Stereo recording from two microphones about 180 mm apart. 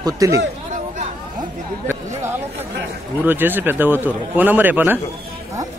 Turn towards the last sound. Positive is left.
turn(degrees=-10)  # may be behind; listen again after turning